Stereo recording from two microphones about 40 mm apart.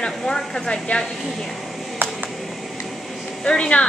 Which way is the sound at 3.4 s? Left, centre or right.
Left.